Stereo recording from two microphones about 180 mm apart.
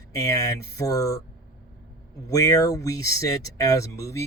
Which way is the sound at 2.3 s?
20° left (ahead or behind).